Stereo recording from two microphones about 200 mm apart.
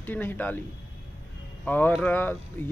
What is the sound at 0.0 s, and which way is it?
Speech, 10° left (ahead or behind).